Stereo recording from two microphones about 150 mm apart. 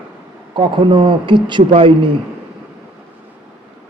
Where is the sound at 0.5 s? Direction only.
30° right (ahead or behind).